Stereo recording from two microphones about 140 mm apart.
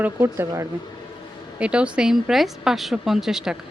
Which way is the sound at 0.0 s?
20° right (ahead or behind).